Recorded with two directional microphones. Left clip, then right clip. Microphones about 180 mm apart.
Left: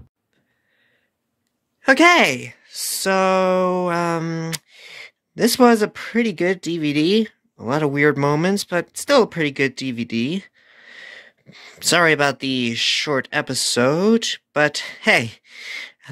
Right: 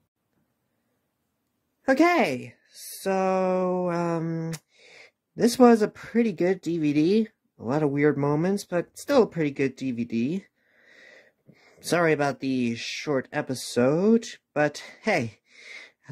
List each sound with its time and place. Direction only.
1.8 s speech: 5° left (ahead or behind)
4.2 s a sound: 15° left (ahead or behind)
4.5 s speech: centre (ahead or behind)